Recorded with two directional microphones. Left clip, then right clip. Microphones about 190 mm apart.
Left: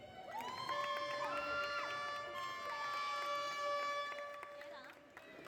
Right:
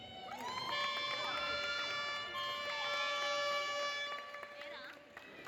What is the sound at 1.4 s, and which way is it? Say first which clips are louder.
Music: right 2 dB; 35° left (ahead or behind).